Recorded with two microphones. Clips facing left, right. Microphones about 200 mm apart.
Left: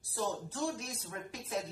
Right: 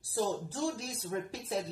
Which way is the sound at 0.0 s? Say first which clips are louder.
Right 4 dB; 30° right (ahead or behind).